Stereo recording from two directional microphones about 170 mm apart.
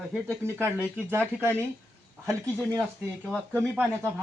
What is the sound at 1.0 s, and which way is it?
Speech, 15° right (ahead or behind).